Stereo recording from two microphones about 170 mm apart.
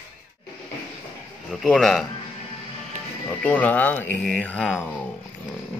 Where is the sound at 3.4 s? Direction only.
10° left (ahead or behind).